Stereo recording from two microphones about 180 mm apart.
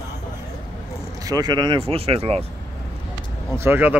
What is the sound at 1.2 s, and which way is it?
Speech, 20° right (ahead or behind).